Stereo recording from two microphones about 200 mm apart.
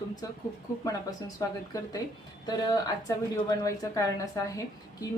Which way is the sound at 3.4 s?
15° left (ahead or behind).